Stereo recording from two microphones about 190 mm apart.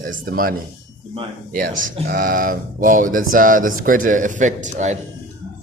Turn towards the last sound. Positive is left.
turn(degrees=-40)  # may be behind; listen again after turning